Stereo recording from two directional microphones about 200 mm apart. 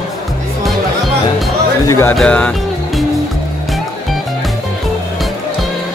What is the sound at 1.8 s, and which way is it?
Speech, 10° left (ahead or behind).